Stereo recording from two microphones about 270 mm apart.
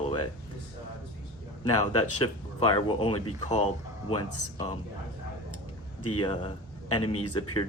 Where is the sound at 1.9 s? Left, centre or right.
Left.